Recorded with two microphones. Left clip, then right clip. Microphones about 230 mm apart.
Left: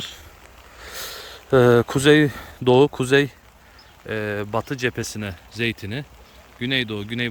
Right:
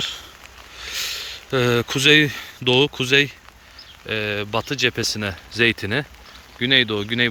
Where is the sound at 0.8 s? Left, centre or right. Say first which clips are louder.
Right 7 dB; left.